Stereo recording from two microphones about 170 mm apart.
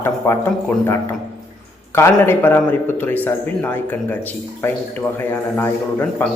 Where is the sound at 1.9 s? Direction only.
15° left (ahead or behind).